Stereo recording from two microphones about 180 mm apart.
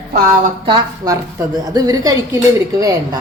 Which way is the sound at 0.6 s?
20° right (ahead or behind).